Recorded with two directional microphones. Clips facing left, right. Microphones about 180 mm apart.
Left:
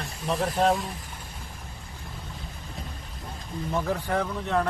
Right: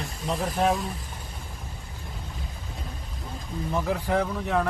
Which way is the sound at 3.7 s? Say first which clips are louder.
Right 1 dB; 5° right (ahead or behind).